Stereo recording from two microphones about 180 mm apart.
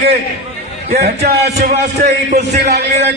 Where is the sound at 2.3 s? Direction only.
40° right (ahead or behind).